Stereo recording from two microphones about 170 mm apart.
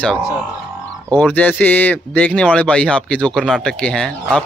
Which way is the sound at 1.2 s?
10° left (ahead or behind).